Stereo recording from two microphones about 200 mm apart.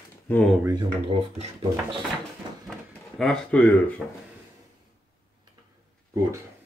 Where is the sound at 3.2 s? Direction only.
5° left (ahead or behind).